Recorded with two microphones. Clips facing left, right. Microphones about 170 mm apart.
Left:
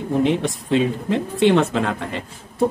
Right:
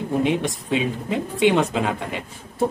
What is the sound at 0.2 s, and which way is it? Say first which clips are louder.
Speech: left 4 dB; 15° right (ahead or behind).